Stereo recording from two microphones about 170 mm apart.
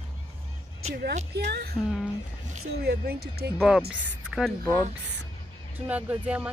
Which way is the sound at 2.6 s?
70° right (ahead or behind).